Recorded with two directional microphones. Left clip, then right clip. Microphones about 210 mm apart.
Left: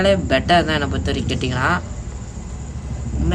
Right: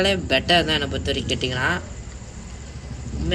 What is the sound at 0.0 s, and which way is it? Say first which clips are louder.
Speech: left 4 dB; 10° right (ahead or behind).